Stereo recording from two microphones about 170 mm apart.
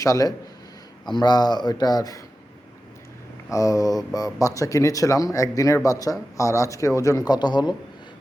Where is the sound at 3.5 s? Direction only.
20° left (ahead or behind).